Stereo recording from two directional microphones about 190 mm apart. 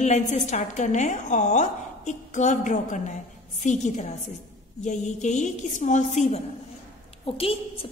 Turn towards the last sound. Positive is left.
turn(degrees=30)  # may be behind; listen again after turning